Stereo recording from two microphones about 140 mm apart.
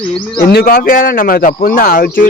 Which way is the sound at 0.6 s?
90° left.